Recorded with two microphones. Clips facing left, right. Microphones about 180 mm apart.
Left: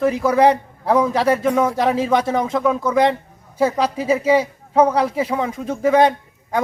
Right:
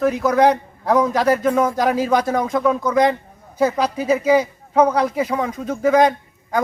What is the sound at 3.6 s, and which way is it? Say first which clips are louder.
Speech: even; 30° left (ahead or behind).